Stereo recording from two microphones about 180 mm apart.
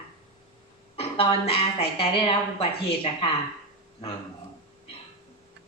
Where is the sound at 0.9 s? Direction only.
30° left (ahead or behind).